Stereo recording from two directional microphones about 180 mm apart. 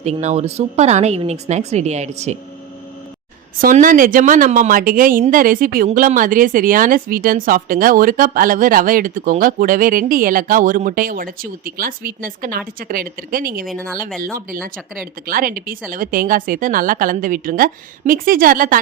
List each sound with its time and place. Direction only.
0.0 s a woman's voice: 40° right (ahead or behind)
3.6 s a woman's voice: 50° right (ahead or behind)
13.7 s speech: 5° left (ahead or behind)
14.3 s a woman's voice: 50° right (ahead or behind)